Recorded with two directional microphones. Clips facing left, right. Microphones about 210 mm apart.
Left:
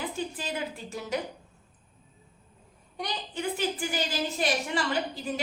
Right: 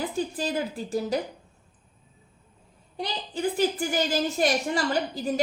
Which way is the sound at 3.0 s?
35° right (ahead or behind).